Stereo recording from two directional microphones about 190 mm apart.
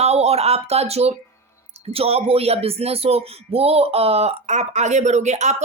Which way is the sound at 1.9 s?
30° right (ahead or behind).